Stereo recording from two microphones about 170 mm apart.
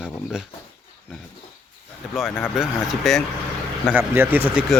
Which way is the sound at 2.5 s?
Centre (ahead or behind).